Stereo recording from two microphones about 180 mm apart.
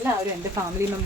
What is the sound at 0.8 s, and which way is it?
Speech, 15° right (ahead or behind).